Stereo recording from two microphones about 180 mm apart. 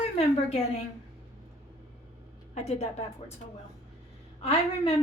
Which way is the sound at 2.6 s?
35° left (ahead or behind).